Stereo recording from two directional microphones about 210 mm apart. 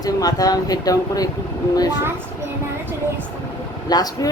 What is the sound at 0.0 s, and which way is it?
Speech, 15° left (ahead or behind).